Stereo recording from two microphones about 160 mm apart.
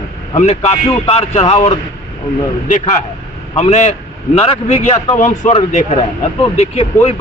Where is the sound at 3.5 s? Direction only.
40° left (ahead or behind).